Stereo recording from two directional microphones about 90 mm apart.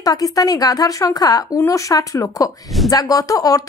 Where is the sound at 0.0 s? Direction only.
40° left (ahead or behind).